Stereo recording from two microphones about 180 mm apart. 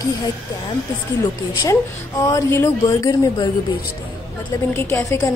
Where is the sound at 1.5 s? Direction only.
20° left (ahead or behind).